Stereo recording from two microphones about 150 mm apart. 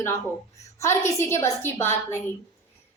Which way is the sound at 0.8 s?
20° left (ahead or behind).